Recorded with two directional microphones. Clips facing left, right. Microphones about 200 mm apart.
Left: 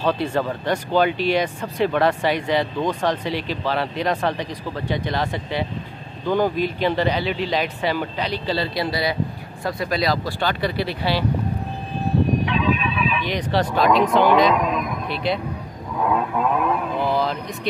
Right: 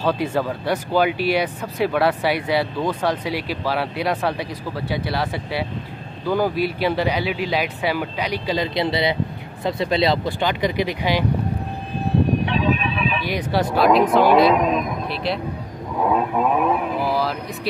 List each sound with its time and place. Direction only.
0.0 s speech: 10° right (ahead or behind)
12.8 s neigh: 35° right (ahead or behind)
13.2 s speech: 10° right (ahead or behind)
14.5 s speech: 20° right (ahead or behind)
15.0 s speech: centre (ahead or behind)
16.0 s speech: 20° right (ahead or behind)
16.9 s speech: 5° right (ahead or behind)